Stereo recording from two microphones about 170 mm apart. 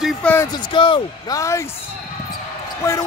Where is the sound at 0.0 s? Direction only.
10° left (ahead or behind).